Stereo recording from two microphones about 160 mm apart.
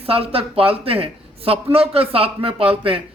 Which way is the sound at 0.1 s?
35° right (ahead or behind).